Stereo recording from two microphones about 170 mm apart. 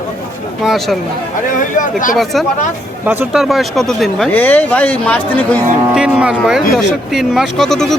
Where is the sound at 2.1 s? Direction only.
Centre (ahead or behind).